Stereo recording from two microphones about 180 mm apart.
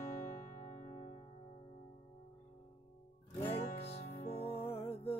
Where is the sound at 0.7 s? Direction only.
40° left (ahead or behind).